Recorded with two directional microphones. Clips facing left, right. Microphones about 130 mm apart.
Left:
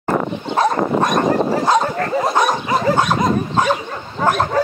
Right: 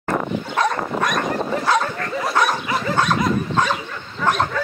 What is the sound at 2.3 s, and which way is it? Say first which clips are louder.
Dog: left 3 dB; 20° left (ahead or behind).